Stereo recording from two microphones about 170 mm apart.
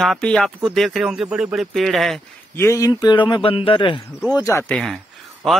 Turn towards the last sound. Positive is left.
turn(degrees=0)  # may be behind; listen again after turning